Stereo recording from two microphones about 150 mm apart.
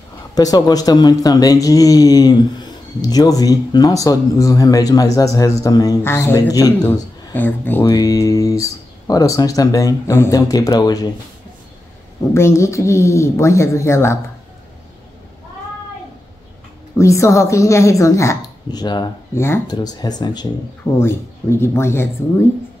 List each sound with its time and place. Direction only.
0.3 s speech: 25° left (ahead or behind)
6.8 s speech: 15° left (ahead or behind)
7.8 s speech: 25° left (ahead or behind)
12.4 s speech: 20° left (ahead or behind)
16.9 s speech: 20° left (ahead or behind)
19.3 s speech: 15° left (ahead or behind)
19.7 s speech: 25° left (ahead or behind)
21.0 s speech: 15° left (ahead or behind)